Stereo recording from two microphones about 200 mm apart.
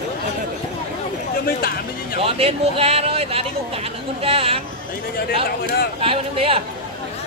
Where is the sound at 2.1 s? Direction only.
30° right (ahead or behind).